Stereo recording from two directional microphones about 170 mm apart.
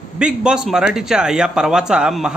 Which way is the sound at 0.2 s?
5° right (ahead or behind).